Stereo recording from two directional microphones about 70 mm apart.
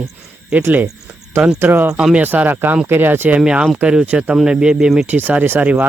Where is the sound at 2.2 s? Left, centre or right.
Right.